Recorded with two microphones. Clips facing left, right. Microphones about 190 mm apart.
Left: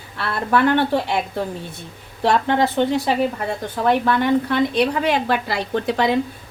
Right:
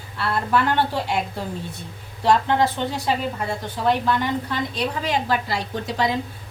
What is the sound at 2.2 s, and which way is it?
A woman's voice, 60° left (ahead or behind).